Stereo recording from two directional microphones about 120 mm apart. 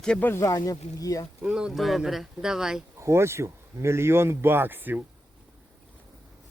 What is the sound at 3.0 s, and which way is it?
Speech, 20° right (ahead or behind).